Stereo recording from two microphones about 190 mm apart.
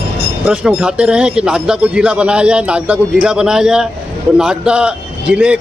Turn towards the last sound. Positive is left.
turn(degrees=-5)  # may be behind; listen again after turning